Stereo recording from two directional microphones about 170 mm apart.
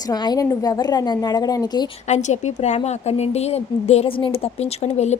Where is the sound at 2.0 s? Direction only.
45° left (ahead or behind).